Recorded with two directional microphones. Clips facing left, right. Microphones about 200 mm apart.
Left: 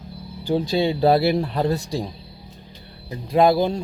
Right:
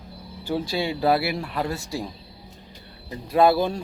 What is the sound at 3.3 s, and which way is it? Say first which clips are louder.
Speech: left 2 dB; 15° left (ahead or behind).